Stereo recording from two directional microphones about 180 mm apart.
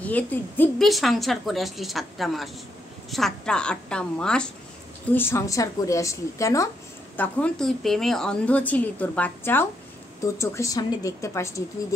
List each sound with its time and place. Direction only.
0.0 s a woman's voice: 10° left (ahead or behind)
7.2 s a woman's voice: 5° left (ahead or behind)